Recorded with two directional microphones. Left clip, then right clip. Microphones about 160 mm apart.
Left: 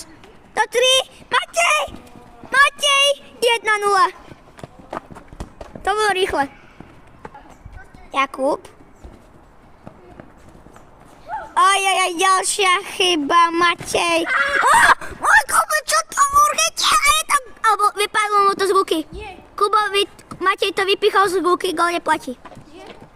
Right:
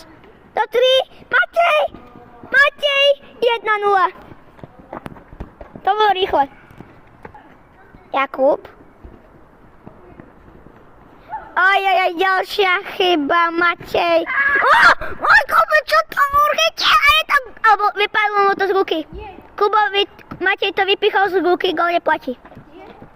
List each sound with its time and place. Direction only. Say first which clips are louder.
0.5 s a sound: right 1 dB; 20° left (ahead or behind)
4.9 s clip-clop: left 1 dB; 35° right (ahead or behind)
5.8 s speech: right 3 dB; 25° left (ahead or behind)
8.1 s a woman's voice: right 3 dB; 15° left (ahead or behind)
11.3 s speech: even; 20° left (ahead or behind)